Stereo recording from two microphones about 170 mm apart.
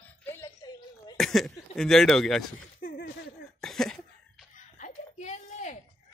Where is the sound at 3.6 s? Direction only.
5° left (ahead or behind).